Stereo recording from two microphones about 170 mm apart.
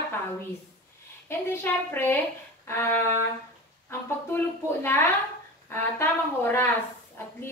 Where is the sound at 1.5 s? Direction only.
15° left (ahead or behind).